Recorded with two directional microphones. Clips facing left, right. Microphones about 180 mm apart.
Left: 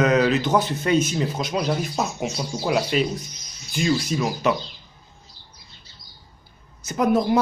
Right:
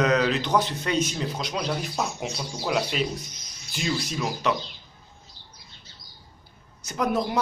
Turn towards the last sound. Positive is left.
turn(degrees=0)  # may be behind; listen again after turning